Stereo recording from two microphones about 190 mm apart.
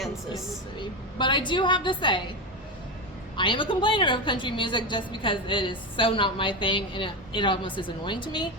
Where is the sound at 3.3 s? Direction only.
25° left (ahead or behind).